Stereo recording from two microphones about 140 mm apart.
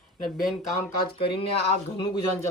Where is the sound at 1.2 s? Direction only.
40° left (ahead or behind).